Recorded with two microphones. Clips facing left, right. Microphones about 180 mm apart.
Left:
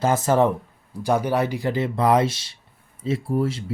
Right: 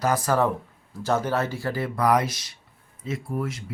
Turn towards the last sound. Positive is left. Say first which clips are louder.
# left 6 dB
turn(degrees=30)  # may be behind; listen again after turning